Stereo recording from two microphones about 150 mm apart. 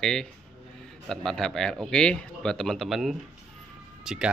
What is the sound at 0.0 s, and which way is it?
Speech, 5° left (ahead or behind).